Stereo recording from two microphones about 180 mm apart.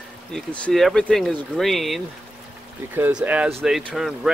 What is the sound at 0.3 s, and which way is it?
Speech, 5° left (ahead or behind).